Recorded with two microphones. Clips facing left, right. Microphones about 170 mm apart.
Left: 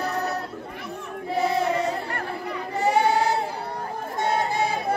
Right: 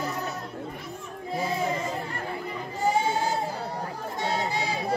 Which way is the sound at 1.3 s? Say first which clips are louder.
Left 5 dB; 70° left (ahead or behind).